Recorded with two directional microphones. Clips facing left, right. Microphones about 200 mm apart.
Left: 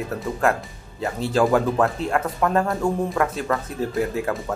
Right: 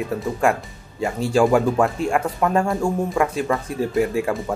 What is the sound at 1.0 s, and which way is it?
Speech, 10° right (ahead or behind).